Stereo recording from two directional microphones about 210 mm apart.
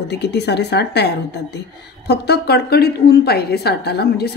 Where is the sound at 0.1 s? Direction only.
50° left (ahead or behind).